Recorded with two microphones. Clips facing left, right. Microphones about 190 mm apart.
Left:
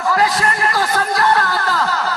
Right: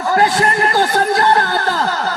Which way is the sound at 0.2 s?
30° right (ahead or behind).